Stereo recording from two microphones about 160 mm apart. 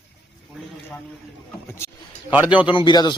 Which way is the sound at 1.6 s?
15° left (ahead or behind).